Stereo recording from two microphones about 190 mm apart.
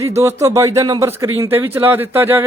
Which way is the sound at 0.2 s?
15° right (ahead or behind).